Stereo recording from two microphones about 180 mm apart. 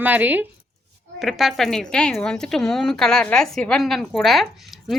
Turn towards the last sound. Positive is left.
turn(degrees=0)  # may be behind; listen again after turning